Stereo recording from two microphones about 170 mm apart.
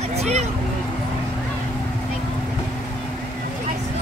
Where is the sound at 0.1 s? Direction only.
40° right (ahead or behind).